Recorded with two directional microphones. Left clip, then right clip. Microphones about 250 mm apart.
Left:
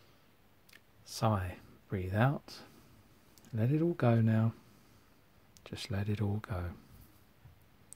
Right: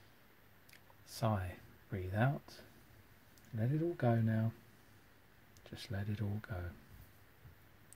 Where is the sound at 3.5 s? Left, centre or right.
Left.